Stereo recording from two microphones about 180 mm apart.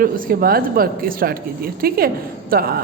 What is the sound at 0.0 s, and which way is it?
A woman's voice, 55° right (ahead or behind).